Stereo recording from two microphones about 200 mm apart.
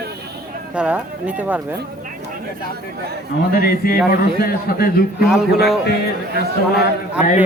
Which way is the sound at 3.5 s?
50° left (ahead or behind).